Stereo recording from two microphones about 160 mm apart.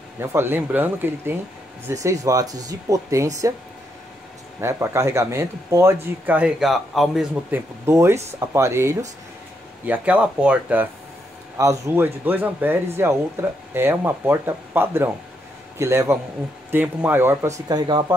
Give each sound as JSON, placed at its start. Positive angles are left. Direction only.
{"t": 0.2, "sound": "speech", "side_deg": -15}
{"t": 4.6, "sound": "speech", "side_deg": -20}
{"t": 6.2, "sound": "speech", "side_deg": -10}
{"t": 7.5, "sound": "speech", "side_deg": -15}